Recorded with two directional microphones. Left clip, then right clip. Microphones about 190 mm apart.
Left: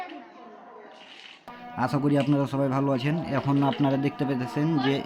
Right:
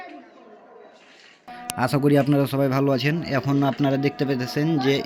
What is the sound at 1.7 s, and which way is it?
A man's voice, 15° right (ahead or behind).